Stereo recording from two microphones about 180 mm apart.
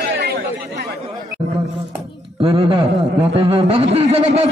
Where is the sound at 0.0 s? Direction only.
60° right (ahead or behind).